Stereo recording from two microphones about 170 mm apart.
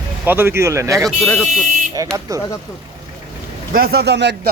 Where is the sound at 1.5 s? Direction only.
50° right (ahead or behind).